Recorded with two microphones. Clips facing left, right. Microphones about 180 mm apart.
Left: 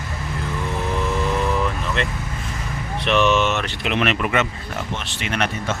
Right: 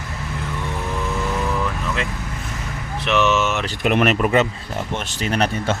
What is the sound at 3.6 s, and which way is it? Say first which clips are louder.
Speech: right 4 dB; 45° right (ahead or behind).